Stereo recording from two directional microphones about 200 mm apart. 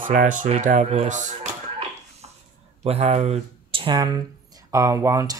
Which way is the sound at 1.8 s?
30° right (ahead or behind).